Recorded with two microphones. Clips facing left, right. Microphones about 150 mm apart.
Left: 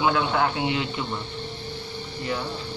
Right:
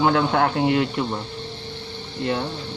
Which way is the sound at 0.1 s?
60° right (ahead or behind).